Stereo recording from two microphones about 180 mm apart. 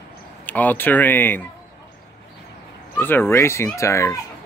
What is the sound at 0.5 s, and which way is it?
Speech, 10° left (ahead or behind).